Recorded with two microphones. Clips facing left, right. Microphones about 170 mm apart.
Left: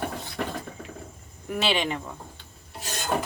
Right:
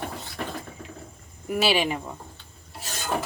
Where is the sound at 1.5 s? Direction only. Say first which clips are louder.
Right 3 dB; 5° right (ahead or behind).